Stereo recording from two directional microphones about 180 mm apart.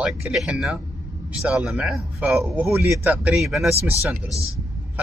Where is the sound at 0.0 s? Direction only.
5° right (ahead or behind).